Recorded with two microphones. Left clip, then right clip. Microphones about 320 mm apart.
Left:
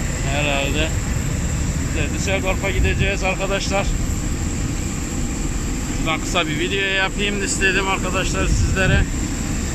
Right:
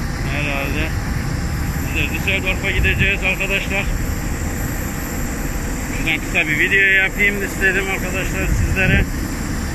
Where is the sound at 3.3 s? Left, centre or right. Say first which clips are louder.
Right 2 dB; centre.